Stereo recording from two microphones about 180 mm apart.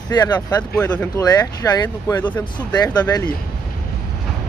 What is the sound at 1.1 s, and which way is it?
Speech, 20° left (ahead or behind).